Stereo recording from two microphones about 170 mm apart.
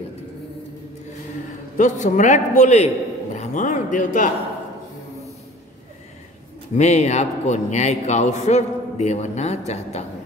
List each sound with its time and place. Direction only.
1.8 s a man's voice: 50° left (ahead or behind)
6.7 s a man's voice: 40° left (ahead or behind)